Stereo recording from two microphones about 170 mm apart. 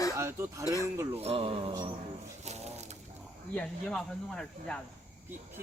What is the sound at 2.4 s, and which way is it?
Pigeon, 40° right (ahead or behind).